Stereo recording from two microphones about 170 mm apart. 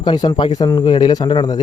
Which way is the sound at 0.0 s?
25° left (ahead or behind).